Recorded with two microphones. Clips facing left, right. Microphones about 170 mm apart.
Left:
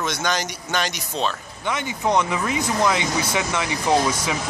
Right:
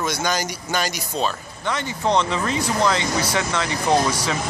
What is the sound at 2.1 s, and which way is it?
Speech, 10° left (ahead or behind).